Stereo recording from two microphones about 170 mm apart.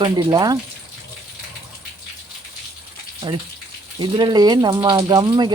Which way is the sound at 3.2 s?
30° right (ahead or behind).